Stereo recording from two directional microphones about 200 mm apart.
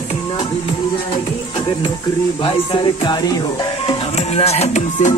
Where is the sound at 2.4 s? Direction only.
25° left (ahead or behind).